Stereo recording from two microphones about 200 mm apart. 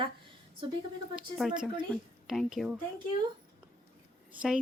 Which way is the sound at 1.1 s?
5° right (ahead or behind).